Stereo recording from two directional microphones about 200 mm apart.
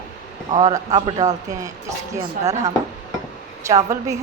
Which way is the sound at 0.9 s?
20° right (ahead or behind).